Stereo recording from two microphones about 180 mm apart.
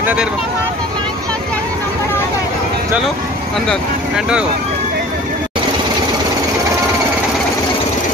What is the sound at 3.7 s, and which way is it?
Speech, 5° right (ahead or behind).